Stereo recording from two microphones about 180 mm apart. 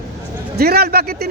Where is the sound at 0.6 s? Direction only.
60° right (ahead or behind).